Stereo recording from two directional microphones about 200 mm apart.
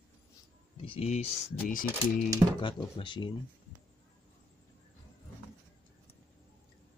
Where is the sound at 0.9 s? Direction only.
30° left (ahead or behind).